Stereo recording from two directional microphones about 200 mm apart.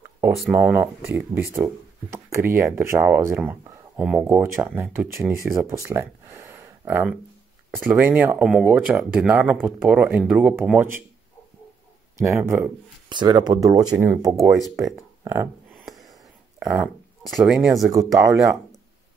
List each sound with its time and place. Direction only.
0.4 s speech: 5° right (ahead or behind)
12.2 s speech: 15° right (ahead or behind)
15.7 s a sound: centre (ahead or behind)
16.6 s speech: 5° right (ahead or behind)
18.1 s speech: 15° right (ahead or behind)